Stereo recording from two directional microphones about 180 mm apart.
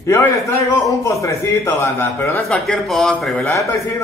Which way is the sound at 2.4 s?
Centre (ahead or behind).